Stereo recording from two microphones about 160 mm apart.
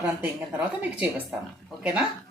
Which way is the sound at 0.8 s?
10° right (ahead or behind).